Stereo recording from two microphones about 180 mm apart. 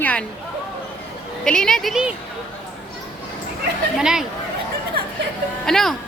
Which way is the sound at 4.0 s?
5° right (ahead or behind).